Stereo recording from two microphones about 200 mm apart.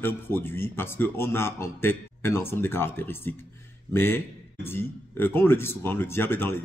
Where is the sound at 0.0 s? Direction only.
10° left (ahead or behind).